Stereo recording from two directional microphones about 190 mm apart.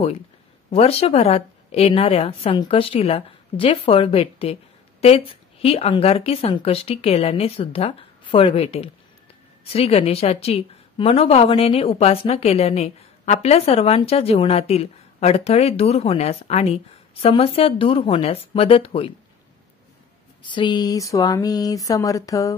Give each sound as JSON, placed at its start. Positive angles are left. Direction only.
{"t": 0.7, "sound": "a woman's voice", "side_deg": 30}
{"t": 20.4, "sound": "speech", "side_deg": 25}